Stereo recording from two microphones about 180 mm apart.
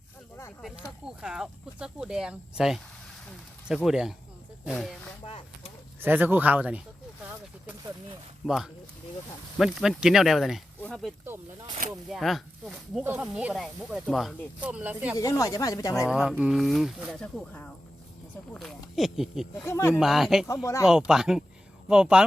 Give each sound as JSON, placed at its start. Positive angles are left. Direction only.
{"t": 0.6, "sound": "speech", "side_deg": -5}
{"t": 3.8, "sound": "speech", "side_deg": -5}
{"t": 5.2, "sound": "a sound", "side_deg": 30}
{"t": 6.0, "sound": "speech", "side_deg": -10}
{"t": 8.4, "sound": "speech", "side_deg": -5}
{"t": 10.8, "sound": "oink", "side_deg": 5}
{"t": 12.1, "sound": "speech", "side_deg": 0}
{"t": 15.2, "sound": "speech", "side_deg": 20}
{"t": 16.0, "sound": "speech", "side_deg": -5}
{"t": 19.6, "sound": "speech", "side_deg": 15}
{"t": 20.0, "sound": "speech", "side_deg": 0}